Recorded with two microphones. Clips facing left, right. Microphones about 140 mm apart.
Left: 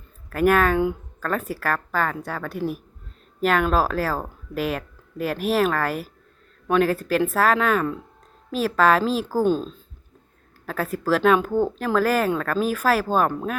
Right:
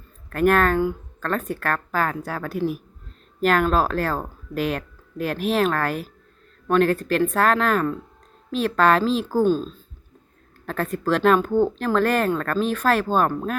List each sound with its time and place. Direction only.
0.3 s speech: 5° left (ahead or behind)
9.4 s speech: 15° left (ahead or behind)
10.7 s speech: 5° left (ahead or behind)